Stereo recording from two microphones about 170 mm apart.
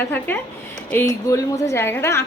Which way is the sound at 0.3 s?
10° left (ahead or behind).